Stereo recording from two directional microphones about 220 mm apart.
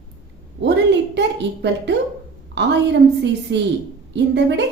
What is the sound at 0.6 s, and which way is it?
A woman's voice, 50° right (ahead or behind).